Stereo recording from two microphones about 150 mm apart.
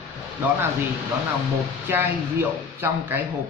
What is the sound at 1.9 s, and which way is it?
Speech, 15° right (ahead or behind).